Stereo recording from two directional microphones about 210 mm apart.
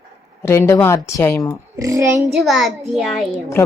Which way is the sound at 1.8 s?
15° right (ahead or behind).